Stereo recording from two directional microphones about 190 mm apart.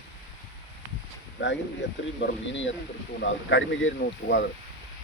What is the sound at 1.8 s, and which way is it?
Speech, 70° left (ahead or behind).